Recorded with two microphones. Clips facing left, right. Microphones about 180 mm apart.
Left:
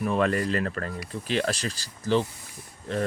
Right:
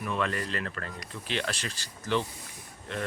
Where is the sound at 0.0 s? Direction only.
40° left (ahead or behind).